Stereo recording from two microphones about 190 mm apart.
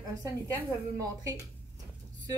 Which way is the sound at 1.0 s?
20° right (ahead or behind).